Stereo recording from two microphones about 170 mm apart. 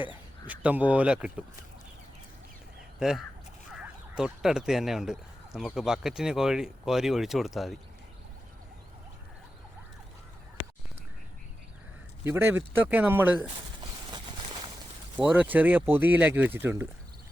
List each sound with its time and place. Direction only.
0.4 s speech: 10° right (ahead or behind)
3.0 s speech: 5° right (ahead or behind)
12.2 s speech: 15° right (ahead or behind)
14.1 s a sound: 25° right (ahead or behind)
15.2 s speech: 10° right (ahead or behind)